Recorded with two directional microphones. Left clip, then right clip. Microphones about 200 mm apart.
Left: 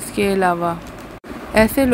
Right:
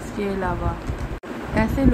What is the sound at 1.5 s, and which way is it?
Speech, 45° left (ahead or behind).